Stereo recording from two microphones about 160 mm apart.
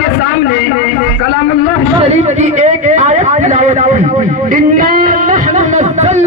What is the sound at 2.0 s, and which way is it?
A man's voice, 45° right (ahead or behind).